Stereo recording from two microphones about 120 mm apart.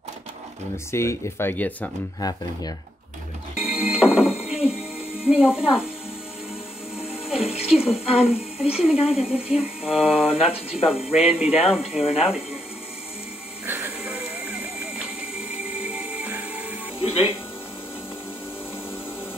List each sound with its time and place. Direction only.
0.9 s speech: 25° left (ahead or behind)
2.1 s speech: 30° left (ahead or behind)
3.6 s music: 55° left (ahead or behind)
5.6 s speech: 50° left (ahead or behind)
7.0 s speech: 55° left (ahead or behind)
13.7 s music: 15° right (ahead or behind)
15.9 s music: 10° right (ahead or behind)